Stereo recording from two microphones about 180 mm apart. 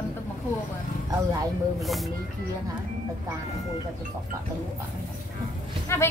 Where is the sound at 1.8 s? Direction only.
Centre (ahead or behind).